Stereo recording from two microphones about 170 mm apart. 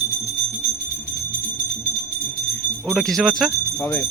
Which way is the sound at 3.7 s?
15° left (ahead or behind).